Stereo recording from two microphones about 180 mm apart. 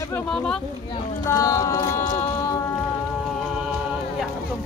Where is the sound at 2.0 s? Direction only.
40° left (ahead or behind).